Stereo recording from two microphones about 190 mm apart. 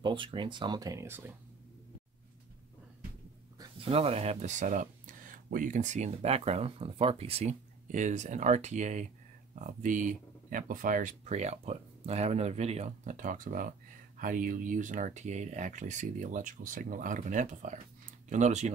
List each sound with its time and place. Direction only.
0.0 s speech: 25° right (ahead or behind)
3.5 s speech: 30° right (ahead or behind)